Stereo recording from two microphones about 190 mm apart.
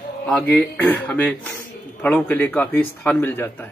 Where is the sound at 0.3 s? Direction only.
5° left (ahead or behind).